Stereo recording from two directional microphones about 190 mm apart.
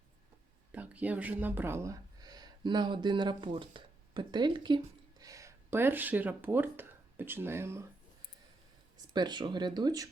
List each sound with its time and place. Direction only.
0.7 s speech: 10° right (ahead or behind)
9.1 s speech: 20° right (ahead or behind)